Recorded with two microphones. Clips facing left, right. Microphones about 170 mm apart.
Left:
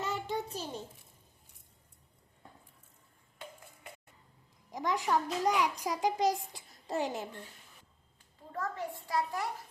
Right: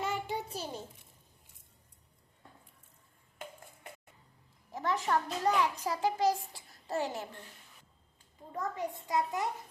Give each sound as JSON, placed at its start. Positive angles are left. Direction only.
{"t": 0.0, "sound": "a sound", "side_deg": -10}
{"t": 4.7, "sound": "a child's voice", "side_deg": 15}
{"t": 8.5, "sound": "a child's voice", "side_deg": -15}